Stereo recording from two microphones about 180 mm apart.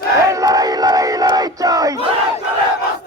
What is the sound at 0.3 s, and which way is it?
Battle cry, 20° right (ahead or behind).